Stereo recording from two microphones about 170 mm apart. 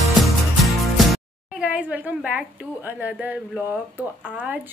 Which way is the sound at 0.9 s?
5° right (ahead or behind).